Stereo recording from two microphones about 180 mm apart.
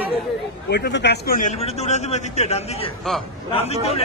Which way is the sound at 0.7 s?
65° left (ahead or behind).